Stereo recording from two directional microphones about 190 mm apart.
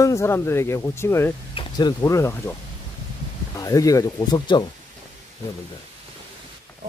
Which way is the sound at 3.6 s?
20° left (ahead or behind).